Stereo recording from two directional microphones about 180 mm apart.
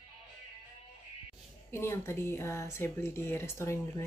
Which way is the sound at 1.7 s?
15° left (ahead or behind).